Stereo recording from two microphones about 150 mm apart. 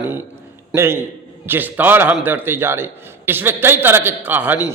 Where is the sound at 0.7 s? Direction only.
15° right (ahead or behind).